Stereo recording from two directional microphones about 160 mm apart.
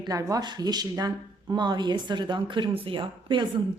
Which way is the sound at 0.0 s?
20° right (ahead or behind).